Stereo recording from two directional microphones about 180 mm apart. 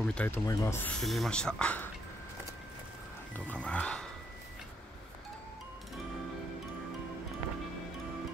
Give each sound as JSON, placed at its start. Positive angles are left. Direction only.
{"t": 0.0, "sound": "speech", "side_deg": 5}
{"t": 1.0, "sound": "speech", "side_deg": 0}
{"t": 3.3, "sound": "speech", "side_deg": 5}